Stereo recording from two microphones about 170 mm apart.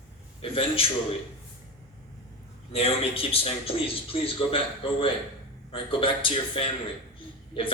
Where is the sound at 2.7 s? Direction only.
35° left (ahead or behind).